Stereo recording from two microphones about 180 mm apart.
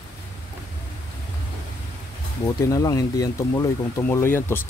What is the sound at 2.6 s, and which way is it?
Speech, 20° left (ahead or behind).